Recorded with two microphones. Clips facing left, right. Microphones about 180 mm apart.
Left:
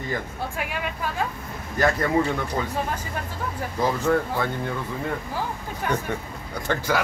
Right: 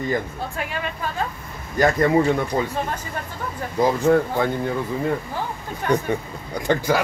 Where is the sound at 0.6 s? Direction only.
10° left (ahead or behind).